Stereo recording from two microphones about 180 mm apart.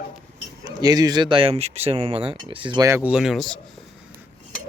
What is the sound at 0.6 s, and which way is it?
Speech, 20° right (ahead or behind).